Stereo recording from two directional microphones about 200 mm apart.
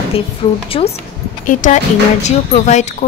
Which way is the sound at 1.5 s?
40° left (ahead or behind).